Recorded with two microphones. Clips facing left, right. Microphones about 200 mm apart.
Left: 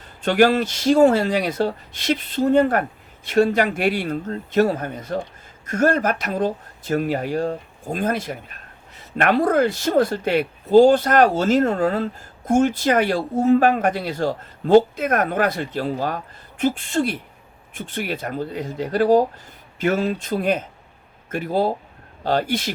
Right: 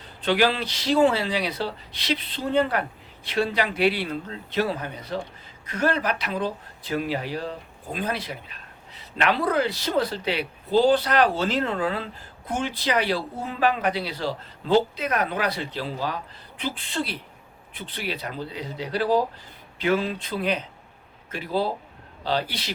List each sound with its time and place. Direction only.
0.2 s speech: 45° left (ahead or behind)